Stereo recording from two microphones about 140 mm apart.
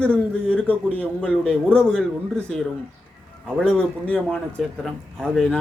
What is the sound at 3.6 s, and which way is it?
A man's voice, 5° left (ahead or behind).